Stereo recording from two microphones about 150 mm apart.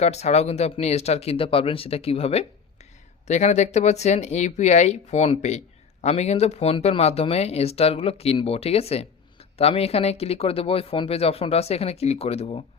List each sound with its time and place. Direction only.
0.0 s speech: 45° left (ahead or behind)